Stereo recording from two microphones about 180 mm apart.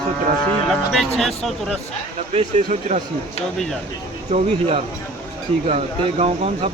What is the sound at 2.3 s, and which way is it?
Speech, 35° right (ahead or behind).